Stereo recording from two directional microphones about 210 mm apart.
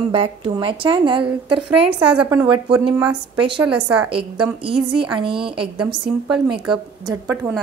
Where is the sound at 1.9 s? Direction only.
5° right (ahead or behind).